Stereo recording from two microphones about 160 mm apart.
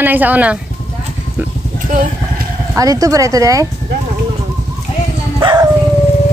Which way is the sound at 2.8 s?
20° right (ahead or behind).